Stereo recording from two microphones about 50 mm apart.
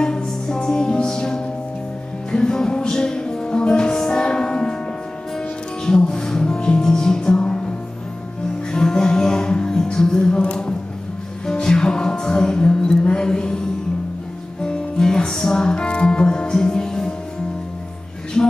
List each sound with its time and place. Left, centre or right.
0.0 s music: centre
5.9 s music: centre
8.7 s music: centre
14.6 s music: centre